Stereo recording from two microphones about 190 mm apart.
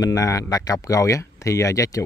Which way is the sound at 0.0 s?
20° left (ahead or behind).